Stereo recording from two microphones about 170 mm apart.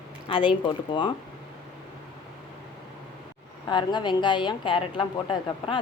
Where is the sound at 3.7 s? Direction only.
25° left (ahead or behind).